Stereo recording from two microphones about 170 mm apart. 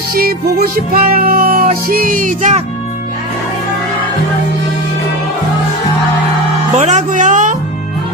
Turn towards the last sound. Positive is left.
turn(degrees=-50)  # may be behind; listen again after turning